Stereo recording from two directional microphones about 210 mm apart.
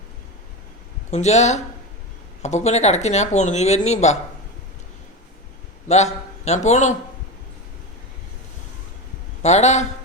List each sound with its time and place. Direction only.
1.1 s speech: 35° left (ahead or behind)
5.9 s speech: 30° left (ahead or behind)
9.4 s speech: 30° left (ahead or behind)